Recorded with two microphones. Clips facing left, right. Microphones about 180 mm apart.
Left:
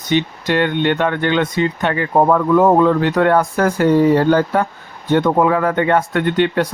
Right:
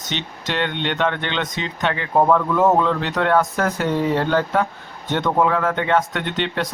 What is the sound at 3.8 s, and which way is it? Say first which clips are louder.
Speech: left 10 dB; 45° left (ahead or behind).